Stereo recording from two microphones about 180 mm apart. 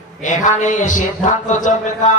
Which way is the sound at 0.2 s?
45° left (ahead or behind).